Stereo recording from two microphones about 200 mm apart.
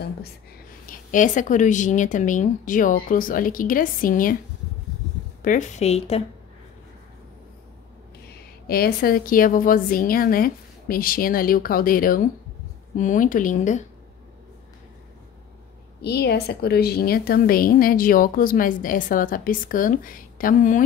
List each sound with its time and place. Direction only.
0.8 s speech: 40° left (ahead or behind)
5.4 s speech: 40° left (ahead or behind)
8.6 s a woman's voice: 50° left (ahead or behind)
16.0 s a woman's voice: 55° left (ahead or behind)